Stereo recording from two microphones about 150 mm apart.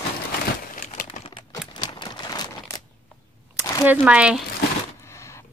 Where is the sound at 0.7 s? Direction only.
60° left (ahead or behind).